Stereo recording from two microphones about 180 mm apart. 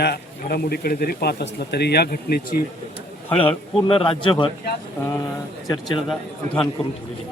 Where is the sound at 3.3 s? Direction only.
30° left (ahead or behind).